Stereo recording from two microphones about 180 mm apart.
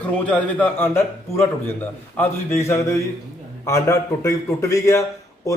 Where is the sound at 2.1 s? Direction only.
15° left (ahead or behind).